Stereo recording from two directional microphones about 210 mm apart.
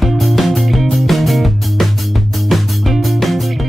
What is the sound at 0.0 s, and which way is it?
Music, centre (ahead or behind).